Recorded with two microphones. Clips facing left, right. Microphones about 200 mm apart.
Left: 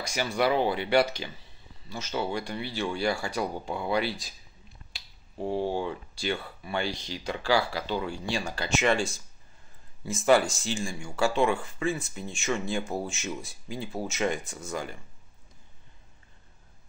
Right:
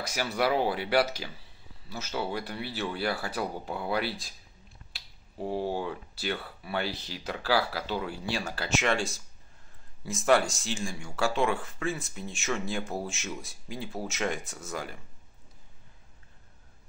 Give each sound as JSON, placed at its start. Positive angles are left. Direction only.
{"t": 0.0, "sound": "speech", "side_deg": -5}